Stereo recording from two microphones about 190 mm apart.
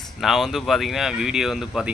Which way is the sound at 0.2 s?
Centre (ahead or behind).